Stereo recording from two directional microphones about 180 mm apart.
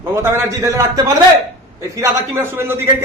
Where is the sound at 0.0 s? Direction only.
15° right (ahead or behind).